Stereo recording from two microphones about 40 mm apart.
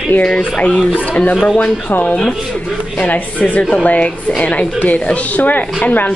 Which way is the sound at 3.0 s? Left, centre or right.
Left.